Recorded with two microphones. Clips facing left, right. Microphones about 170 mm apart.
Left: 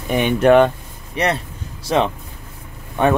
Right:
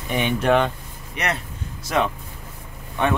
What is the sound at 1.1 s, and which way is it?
Speech, 30° left (ahead or behind).